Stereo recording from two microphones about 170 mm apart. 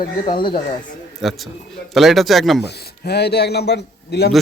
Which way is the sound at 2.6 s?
70° left (ahead or behind).